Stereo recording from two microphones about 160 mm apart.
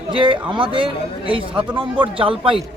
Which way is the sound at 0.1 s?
30° right (ahead or behind).